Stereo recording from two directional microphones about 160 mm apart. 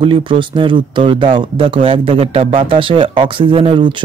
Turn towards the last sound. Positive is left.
turn(degrees=-30)  # may be behind; listen again after turning